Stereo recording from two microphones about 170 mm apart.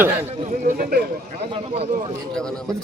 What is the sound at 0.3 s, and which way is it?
A man's voice, 45° right (ahead or behind).